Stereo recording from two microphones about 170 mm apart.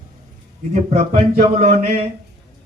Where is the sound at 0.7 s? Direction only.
40° right (ahead or behind).